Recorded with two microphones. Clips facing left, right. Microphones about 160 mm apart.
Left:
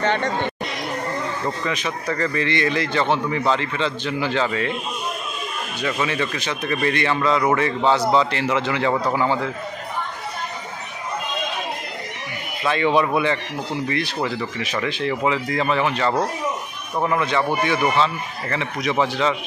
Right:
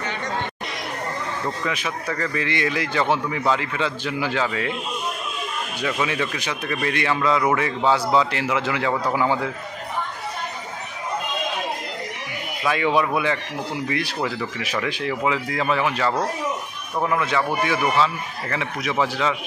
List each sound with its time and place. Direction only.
0.0 s chatter: 65° left (ahead or behind)
1.7 s speech: 5° right (ahead or behind)
5.8 s speech: 10° right (ahead or behind)
12.6 s speech: 5° right (ahead or behind)